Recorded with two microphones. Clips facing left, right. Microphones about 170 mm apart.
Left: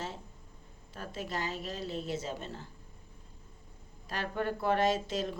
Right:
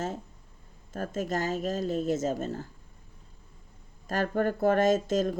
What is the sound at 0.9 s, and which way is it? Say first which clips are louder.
Speech: right 7 dB; 45° right (ahead or behind).